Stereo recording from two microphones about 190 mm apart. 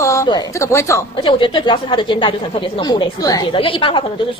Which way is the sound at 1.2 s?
25° left (ahead or behind).